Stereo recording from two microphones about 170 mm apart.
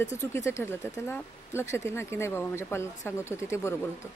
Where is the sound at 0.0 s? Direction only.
15° left (ahead or behind).